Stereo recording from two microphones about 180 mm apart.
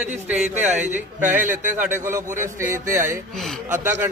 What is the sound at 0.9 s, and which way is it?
A man's voice, 10° right (ahead or behind).